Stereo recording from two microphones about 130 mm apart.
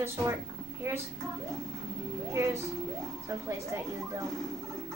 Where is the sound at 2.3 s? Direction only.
20° right (ahead or behind).